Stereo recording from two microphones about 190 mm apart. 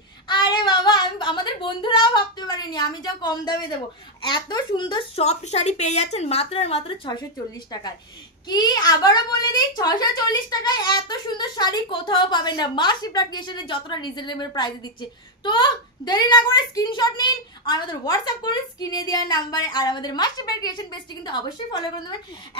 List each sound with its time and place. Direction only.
0.3 s speech: 25° left (ahead or behind)
8.5 s a woman's voice: 20° left (ahead or behind)